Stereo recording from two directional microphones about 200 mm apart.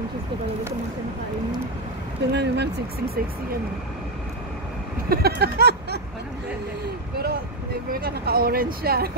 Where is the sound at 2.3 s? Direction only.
55° right (ahead or behind).